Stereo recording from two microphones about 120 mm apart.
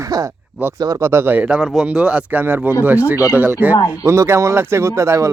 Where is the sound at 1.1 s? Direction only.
20° right (ahead or behind).